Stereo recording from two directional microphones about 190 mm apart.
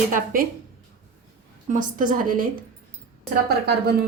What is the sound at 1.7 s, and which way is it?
Speech, 45° right (ahead or behind).